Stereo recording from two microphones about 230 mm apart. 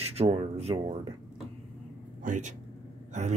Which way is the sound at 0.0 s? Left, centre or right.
Right.